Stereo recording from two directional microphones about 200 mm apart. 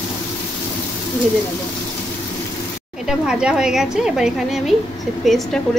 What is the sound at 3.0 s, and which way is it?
A woman's voice, 5° right (ahead or behind).